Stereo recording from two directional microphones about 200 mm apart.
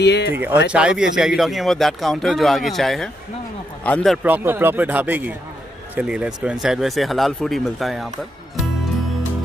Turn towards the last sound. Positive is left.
turn(degrees=0)  # may be behind; listen again after turning